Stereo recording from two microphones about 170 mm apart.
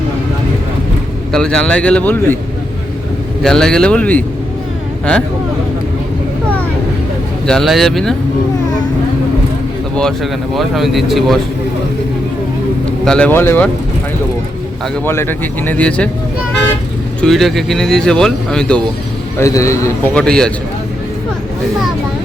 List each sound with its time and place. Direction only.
1.3 s speech: 5° left (ahead or behind)
3.4 s speech: 5° left (ahead or behind)
7.4 s speech: centre (ahead or behind)
9.9 s speech: 5° left (ahead or behind)
13.1 s speech: 5° left (ahead or behind)
15.0 s speech: 15° left (ahead or behind)
17.2 s speech: centre (ahead or behind)
19.4 s speech: 20° left (ahead or behind)
20.1 s speech: 5° left (ahead or behind)